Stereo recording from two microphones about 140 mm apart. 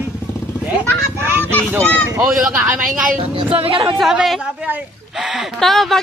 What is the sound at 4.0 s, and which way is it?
A woman's voice, centre (ahead or behind).